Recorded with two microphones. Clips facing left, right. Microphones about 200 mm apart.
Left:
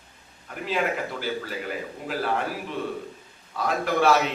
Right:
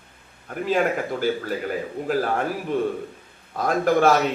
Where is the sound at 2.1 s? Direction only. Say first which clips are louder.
Right 4 dB; 45° right (ahead or behind).